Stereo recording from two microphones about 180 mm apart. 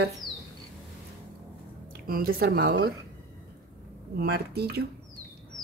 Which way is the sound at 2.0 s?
55° right (ahead or behind).